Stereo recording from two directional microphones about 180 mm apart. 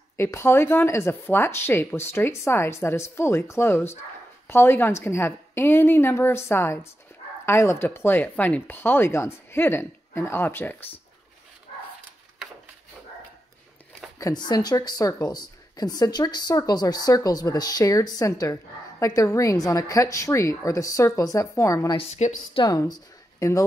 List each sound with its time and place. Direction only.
0.2 s speech: 15° left (ahead or behind)
14.1 s speech: 20° left (ahead or behind)
21.9 s a woman's voice: 35° left (ahead or behind)
22.6 s speech: 20° left (ahead or behind)